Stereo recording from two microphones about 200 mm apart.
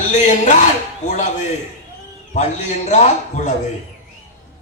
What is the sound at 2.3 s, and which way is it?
A man's voice, 35° left (ahead or behind).